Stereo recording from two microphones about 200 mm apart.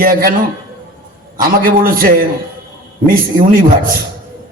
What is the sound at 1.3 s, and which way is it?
Speech, 45° right (ahead or behind).